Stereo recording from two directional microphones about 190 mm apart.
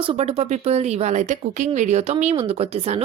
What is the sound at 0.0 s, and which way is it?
Speech, 30° right (ahead or behind).